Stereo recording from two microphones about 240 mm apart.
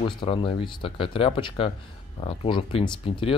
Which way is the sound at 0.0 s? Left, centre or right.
Left.